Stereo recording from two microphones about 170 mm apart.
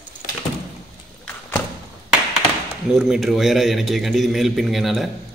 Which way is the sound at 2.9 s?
Centre (ahead or behind).